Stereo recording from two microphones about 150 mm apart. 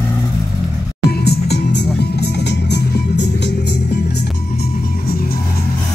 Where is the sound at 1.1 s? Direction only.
90° left.